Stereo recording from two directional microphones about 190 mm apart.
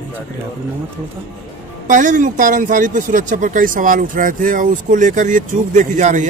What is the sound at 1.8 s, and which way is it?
Speech, 40° right (ahead or behind).